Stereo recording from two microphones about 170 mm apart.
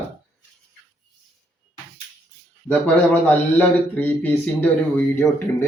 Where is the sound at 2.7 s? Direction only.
10° left (ahead or behind).